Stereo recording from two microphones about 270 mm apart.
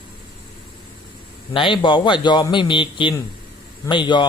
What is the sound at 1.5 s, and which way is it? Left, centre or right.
Speech, centre.